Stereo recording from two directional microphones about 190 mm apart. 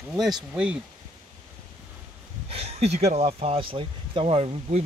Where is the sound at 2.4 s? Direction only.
30° right (ahead or behind).